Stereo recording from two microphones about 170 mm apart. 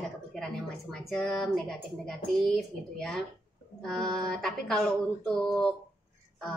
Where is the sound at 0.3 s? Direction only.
Centre (ahead or behind).